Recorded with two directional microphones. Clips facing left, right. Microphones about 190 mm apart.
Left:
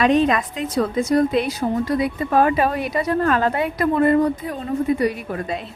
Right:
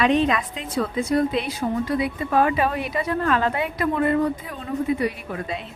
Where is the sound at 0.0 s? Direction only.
45° left (ahead or behind).